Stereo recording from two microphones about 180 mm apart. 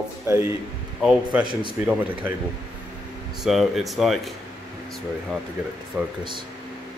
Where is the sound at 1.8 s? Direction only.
10° right (ahead or behind).